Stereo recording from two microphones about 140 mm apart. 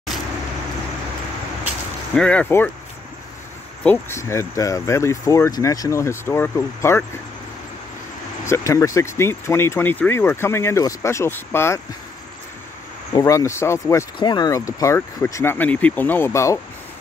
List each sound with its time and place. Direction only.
2.1 s speech: 10° left (ahead or behind)
3.8 s speech: 15° left (ahead or behind)
8.5 s speech: 20° left (ahead or behind)
13.1 s speech: 25° left (ahead or behind)
14.2 s speech: 30° left (ahead or behind)